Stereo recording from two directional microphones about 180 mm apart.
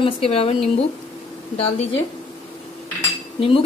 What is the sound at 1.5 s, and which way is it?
Speech, 30° left (ahead or behind).